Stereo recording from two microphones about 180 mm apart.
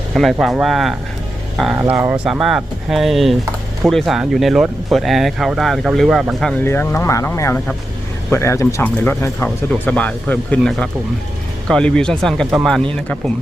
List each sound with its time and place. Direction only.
0.1 s speech: centre (ahead or behind)
1.7 s speech: 10° right (ahead or behind)
6.7 s speech: 15° left (ahead or behind)